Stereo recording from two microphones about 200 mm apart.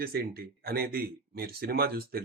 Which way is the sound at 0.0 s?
50° right (ahead or behind).